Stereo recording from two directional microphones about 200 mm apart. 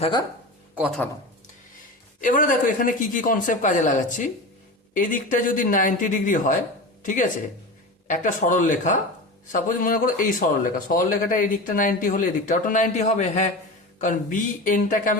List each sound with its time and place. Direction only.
0.0 s speech: 20° left (ahead or behind)
0.8 s speech: centre (ahead or behind)
2.2 s a man's voice: 40° left (ahead or behind)